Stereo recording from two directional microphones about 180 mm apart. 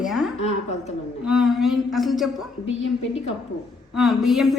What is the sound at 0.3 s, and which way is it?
Speech, 35° left (ahead or behind).